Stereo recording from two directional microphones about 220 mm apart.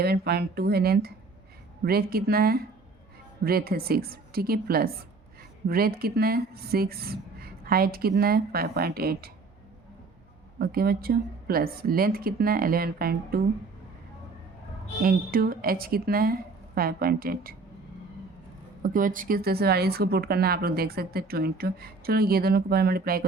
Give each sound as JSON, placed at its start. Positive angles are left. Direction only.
{"t": 0.0, "sound": "speech", "side_deg": -45}
{"t": 10.6, "sound": "speech", "side_deg": -45}
{"t": 15.0, "sound": "speech", "side_deg": -40}
{"t": 18.8, "sound": "speech", "side_deg": -40}